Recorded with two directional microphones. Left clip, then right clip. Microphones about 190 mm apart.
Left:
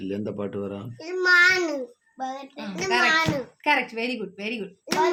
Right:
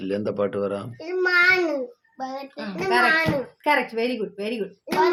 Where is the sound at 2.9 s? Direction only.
55° left (ahead or behind).